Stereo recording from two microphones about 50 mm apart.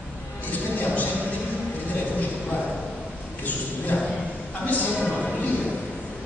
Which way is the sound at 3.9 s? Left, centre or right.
Left.